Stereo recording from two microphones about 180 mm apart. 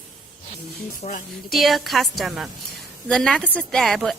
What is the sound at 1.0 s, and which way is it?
Speech, 40° left (ahead or behind).